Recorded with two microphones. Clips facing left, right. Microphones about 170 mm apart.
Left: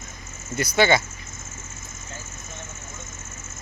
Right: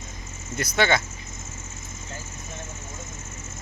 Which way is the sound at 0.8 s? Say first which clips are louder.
Left 3 dB; 5° left (ahead or behind).